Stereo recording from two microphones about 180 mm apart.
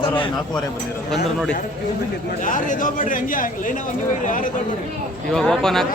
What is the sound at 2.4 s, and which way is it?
Speech, 45° left (ahead or behind).